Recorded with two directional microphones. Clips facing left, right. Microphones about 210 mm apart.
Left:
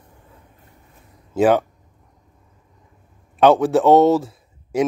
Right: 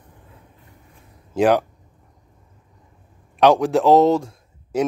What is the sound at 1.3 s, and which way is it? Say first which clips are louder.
Speech: left 1 dB; centre (ahead or behind).